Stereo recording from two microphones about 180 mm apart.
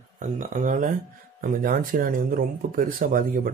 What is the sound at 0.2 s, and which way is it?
Speech, 45° right (ahead or behind).